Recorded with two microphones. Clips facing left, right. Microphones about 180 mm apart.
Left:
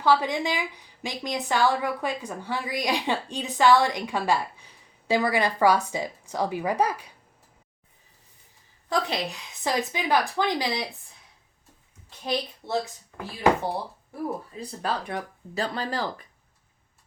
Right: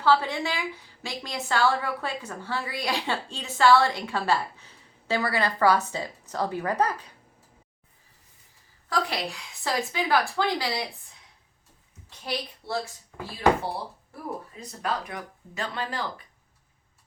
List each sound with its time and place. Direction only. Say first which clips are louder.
0.0 s a woman's voice: left 1 dB; 15° left (ahead or behind)
8.9 s a woman's voice: left 1 dB; 20° left (ahead or behind)
12.2 s a woman's voice: left 4 dB; 20° left (ahead or behind)
14.1 s speech: left 7 dB; 30° left (ahead or behind)